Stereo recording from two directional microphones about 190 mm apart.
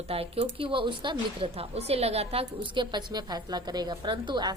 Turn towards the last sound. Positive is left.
turn(degrees=-20)  # may be behind; listen again after turning